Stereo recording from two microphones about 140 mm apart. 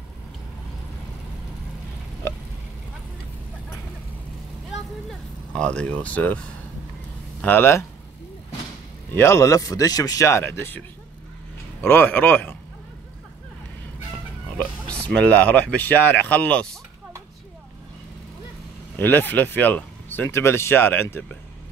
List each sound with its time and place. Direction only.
5.5 s speech: 5° left (ahead or behind)
7.4 s speech: 15° left (ahead or behind)
9.1 s speech: 20° left (ahead or behind)
11.9 s speech: 15° left (ahead or behind)
14.6 s speech: 10° left (ahead or behind)
18.9 s speech: 15° left (ahead or behind)